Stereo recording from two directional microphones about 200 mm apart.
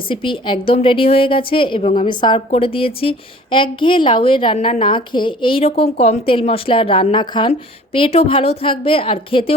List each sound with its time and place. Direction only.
0.1 s a woman's voice: 25° left (ahead or behind)